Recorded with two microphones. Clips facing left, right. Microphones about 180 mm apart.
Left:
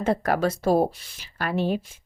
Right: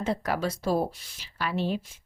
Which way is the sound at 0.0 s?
55° left (ahead or behind).